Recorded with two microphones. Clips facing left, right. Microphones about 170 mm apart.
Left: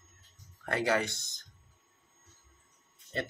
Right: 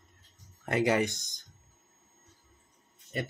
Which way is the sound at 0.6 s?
20° right (ahead or behind).